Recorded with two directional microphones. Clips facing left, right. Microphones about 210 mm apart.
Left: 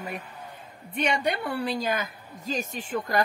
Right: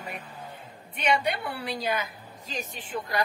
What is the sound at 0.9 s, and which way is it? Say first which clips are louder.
A woman's voice: even; 50° left (ahead or behind).